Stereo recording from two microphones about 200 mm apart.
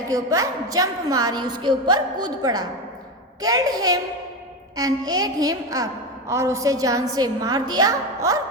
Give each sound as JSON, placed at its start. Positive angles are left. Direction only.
{"t": 0.1, "sound": "a woman's voice", "side_deg": -15}